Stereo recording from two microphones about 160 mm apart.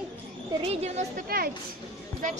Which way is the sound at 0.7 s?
45° right (ahead or behind).